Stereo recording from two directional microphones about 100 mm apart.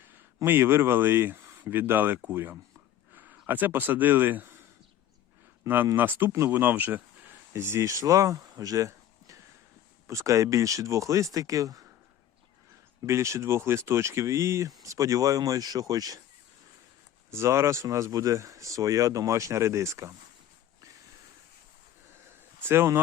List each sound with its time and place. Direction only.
0.3 s speech: 25° right (ahead or behind)
5.6 s speech: 20° right (ahead or behind); by 11.8 s 35° right (ahead or behind)
13.1 s speech: 30° right (ahead or behind)
17.3 s speech: 30° right (ahead or behind)
22.7 s speech: 25° right (ahead or behind)